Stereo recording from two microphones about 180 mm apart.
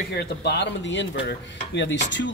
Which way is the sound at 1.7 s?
80° left.